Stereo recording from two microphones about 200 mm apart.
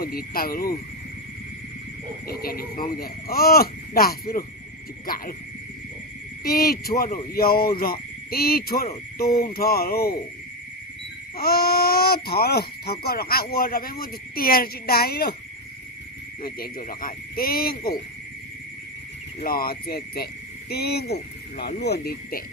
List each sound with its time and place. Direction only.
0.0 s speech: 50° left (ahead or behind)
2.2 s speech: 50° left (ahead or behind)
6.4 s speech: 50° left (ahead or behind)
11.3 s speech: 50° left (ahead or behind)
16.4 s speech: 50° left (ahead or behind)
19.4 s speech: 45° left (ahead or behind)